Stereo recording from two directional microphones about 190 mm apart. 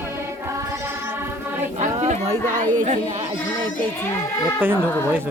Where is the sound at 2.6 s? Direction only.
40° right (ahead or behind).